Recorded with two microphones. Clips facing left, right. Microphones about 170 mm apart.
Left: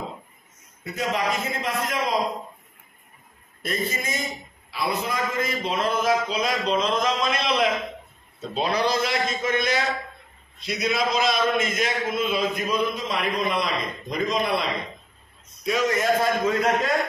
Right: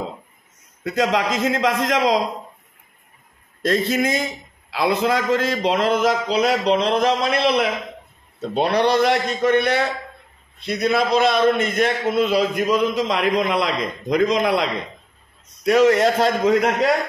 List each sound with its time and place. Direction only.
0.8 s a man's voice: 90° right
3.6 s a man's voice: 85° right